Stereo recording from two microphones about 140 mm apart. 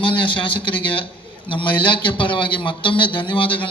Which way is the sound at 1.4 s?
35° left (ahead or behind).